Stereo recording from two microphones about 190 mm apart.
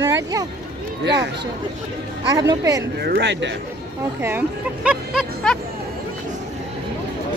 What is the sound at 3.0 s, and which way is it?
Speech, 60° right (ahead or behind).